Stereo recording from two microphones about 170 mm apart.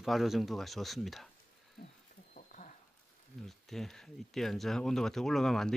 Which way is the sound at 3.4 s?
Centre (ahead or behind).